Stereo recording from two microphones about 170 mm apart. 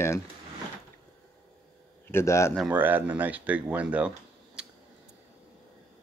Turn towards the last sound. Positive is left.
turn(degrees=-5)  # may be behind; listen again after turning